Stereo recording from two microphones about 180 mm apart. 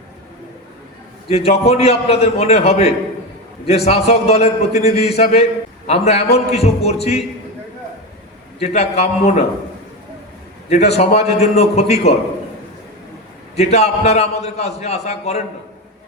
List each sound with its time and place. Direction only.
1.3 s a man's voice: 35° left (ahead or behind)
8.6 s a man's voice: 35° left (ahead or behind)
10.7 s a man's voice: 35° left (ahead or behind)
13.6 s a man's voice: 35° left (ahead or behind)